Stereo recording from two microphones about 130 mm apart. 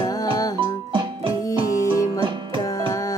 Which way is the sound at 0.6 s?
40° right (ahead or behind).